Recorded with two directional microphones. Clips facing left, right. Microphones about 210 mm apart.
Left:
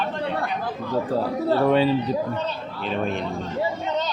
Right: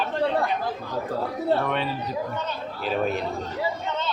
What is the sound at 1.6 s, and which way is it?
Speech, 30° left (ahead or behind).